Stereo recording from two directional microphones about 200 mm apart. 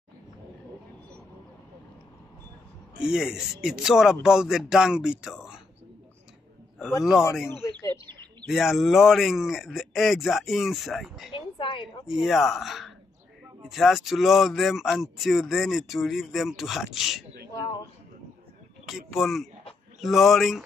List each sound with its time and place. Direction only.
3.0 s speech: 5° right (ahead or behind)
7.6 s bird: 15° left (ahead or behind)
8.1 s bird: 20° right (ahead or behind)
8.5 s speech: centre (ahead or behind)
11.3 s a sound: 25° left (ahead or behind)
12.1 s speech: centre (ahead or behind)
18.9 s speech: centre (ahead or behind)